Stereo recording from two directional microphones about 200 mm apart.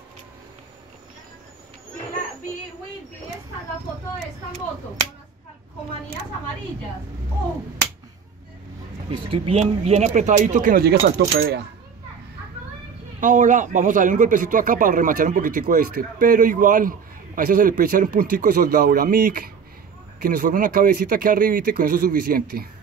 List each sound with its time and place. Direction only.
9.1 s speech: 25° right (ahead or behind); by 11.6 s 55° right (ahead or behind)
13.2 s speech: 40° right (ahead or behind)